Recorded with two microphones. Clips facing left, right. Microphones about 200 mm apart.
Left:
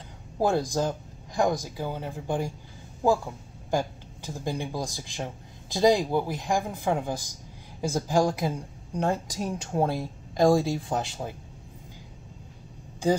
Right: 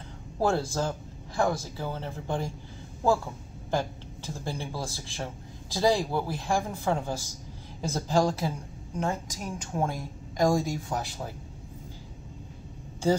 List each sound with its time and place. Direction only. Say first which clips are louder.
0.4 s speech: left 2 dB; 15° left (ahead or behind)
3.7 s speech: left 2 dB; 15° left (ahead or behind)
8.9 s speech: left 4 dB; 35° left (ahead or behind)